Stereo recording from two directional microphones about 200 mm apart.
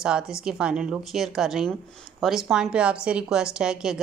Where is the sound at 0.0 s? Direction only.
5° right (ahead or behind).